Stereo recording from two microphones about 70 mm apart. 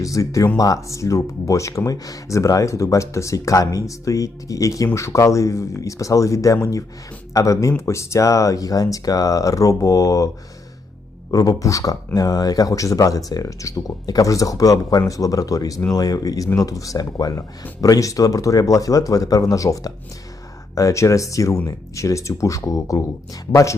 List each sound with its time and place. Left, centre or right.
0.0 s speech: left
11.3 s speech: left